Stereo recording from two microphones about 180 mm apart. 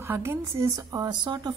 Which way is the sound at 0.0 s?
15° right (ahead or behind).